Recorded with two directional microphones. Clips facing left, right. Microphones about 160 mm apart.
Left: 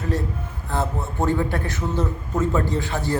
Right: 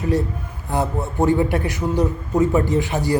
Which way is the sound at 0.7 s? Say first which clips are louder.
Right 4 dB; 15° right (ahead or behind).